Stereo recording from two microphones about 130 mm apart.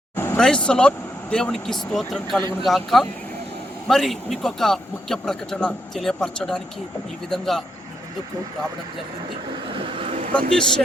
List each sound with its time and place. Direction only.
0.3 s speech: 5° left (ahead or behind)
9.6 s vehicle: 40° right (ahead or behind)
10.3 s speech: 5° left (ahead or behind)